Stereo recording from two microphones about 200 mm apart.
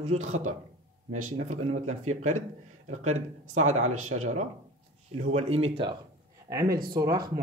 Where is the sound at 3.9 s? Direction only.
90° right.